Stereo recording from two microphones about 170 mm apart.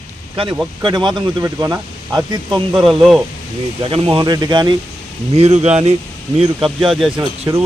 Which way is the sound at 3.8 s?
30° right (ahead or behind).